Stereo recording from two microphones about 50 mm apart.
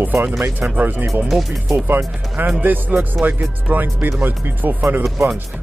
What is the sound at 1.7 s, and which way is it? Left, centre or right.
Speech, right.